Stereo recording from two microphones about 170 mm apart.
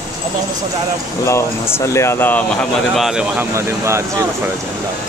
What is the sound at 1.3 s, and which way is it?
Speech, 15° left (ahead or behind).